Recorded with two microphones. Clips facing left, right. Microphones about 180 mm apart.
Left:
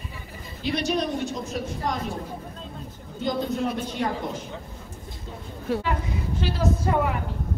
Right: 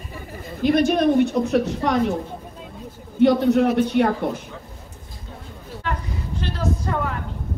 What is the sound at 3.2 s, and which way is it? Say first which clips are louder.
Speech: right 10 dB; 70° right (ahead or behind).